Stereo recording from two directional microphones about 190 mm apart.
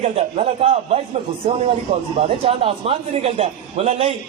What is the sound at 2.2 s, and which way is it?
A man's voice, 30° right (ahead or behind).